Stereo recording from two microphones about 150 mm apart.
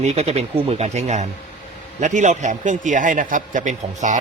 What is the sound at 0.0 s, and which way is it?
A man's voice, 45° right (ahead or behind).